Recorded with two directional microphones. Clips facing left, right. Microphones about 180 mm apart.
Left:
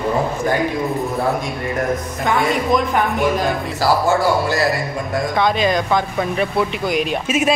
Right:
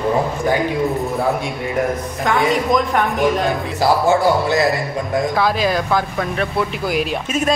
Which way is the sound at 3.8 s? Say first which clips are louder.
Right 2 dB; 20° right (ahead or behind).